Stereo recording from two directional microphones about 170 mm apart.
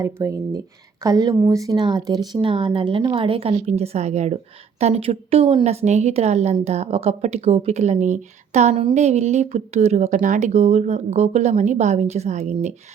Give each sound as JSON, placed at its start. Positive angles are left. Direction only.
{"t": 0.0, "sound": "speech", "side_deg": -20}
{"t": 8.7, "sound": "speech", "side_deg": -30}